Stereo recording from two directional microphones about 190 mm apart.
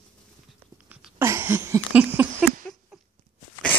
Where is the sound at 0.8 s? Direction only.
10° right (ahead or behind).